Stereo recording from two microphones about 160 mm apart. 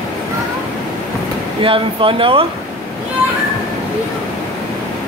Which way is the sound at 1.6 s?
35° right (ahead or behind).